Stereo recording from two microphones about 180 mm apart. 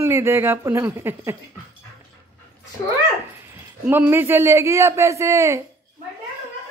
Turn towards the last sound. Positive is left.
turn(degrees=-15)  # may be behind; listen again after turning